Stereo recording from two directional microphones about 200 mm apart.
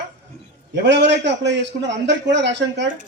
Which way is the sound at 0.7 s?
60° right (ahead or behind).